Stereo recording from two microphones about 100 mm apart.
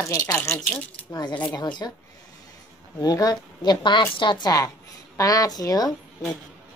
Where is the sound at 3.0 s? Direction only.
40° left (ahead or behind).